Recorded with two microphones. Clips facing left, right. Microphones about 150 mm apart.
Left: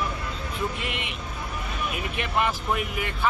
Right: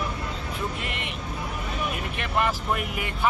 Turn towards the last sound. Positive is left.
turn(degrees=0)  # may be behind; listen again after turning